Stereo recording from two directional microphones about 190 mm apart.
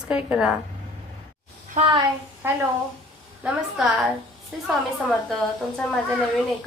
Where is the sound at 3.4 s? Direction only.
Centre (ahead or behind).